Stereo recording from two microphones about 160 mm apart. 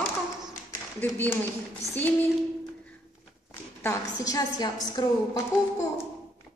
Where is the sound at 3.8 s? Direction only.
20° left (ahead or behind).